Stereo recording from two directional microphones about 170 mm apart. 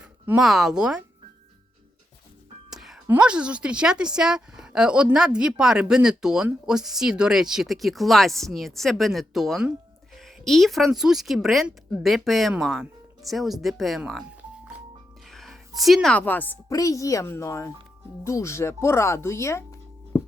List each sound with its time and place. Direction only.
0.0 s speech: 5° right (ahead or behind)
2.6 s a woman's voice: centre (ahead or behind)
15.3 s a woman's voice: centre (ahead or behind)